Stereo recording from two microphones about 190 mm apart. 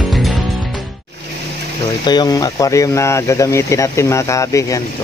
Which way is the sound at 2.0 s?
20° left (ahead or behind).